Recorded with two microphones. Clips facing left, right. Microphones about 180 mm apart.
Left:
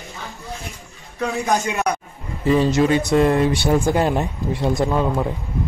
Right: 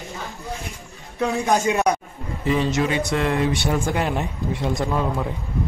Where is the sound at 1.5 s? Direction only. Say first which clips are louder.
Right 2 dB; 20° right (ahead or behind).